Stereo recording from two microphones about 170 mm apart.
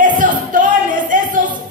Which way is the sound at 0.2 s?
50° right (ahead or behind).